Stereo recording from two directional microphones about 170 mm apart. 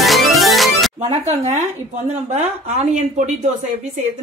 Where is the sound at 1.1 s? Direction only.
40° right (ahead or behind).